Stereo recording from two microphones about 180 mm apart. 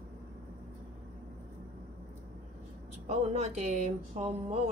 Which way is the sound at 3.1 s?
40° right (ahead or behind).